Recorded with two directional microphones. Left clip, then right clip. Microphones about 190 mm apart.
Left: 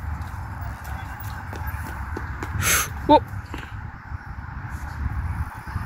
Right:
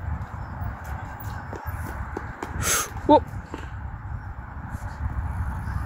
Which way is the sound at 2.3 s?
30° right (ahead or behind).